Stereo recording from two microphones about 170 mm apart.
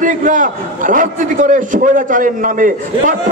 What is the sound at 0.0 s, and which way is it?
A man's voice, 50° right (ahead or behind).